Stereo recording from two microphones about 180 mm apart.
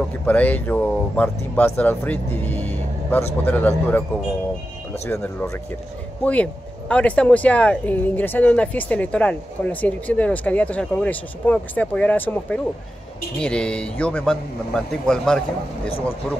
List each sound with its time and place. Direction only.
0.3 s speech: 10° left (ahead or behind)
5.1 s speech: 15° left (ahead or behind)